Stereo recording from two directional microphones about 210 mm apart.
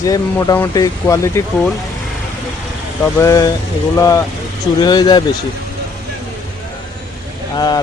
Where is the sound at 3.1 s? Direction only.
15° left (ahead or behind).